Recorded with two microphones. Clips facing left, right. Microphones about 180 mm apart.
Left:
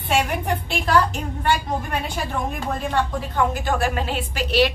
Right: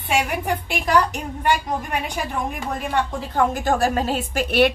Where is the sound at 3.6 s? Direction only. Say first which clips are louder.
Right 3 dB; 40° right (ahead or behind).